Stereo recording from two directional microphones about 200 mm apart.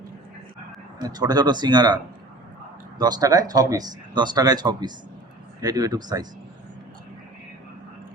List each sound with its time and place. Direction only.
0.9 s speech: 20° right (ahead or behind)
3.0 s speech: 20° right (ahead or behind)